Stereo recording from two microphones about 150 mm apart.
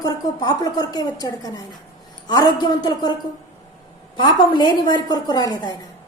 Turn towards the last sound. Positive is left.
turn(degrees=25)  # may be behind; listen again after turning